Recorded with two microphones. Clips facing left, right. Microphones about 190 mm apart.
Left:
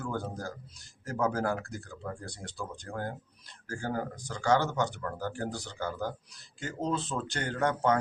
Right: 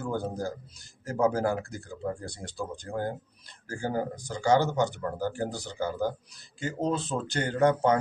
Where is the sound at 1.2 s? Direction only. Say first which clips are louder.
Right 4 dB; 15° right (ahead or behind).